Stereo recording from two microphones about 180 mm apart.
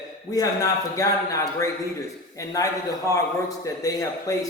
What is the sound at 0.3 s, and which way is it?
A man's voice, 20° left (ahead or behind).